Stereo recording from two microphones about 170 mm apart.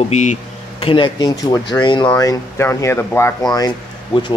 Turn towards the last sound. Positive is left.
turn(degrees=25)  # may be behind; listen again after turning